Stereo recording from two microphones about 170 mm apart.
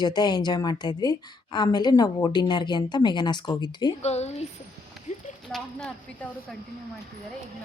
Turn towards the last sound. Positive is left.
turn(degrees=5)  # may be behind; listen again after turning